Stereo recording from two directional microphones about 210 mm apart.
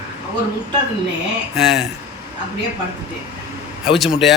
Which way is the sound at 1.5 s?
Centre (ahead or behind).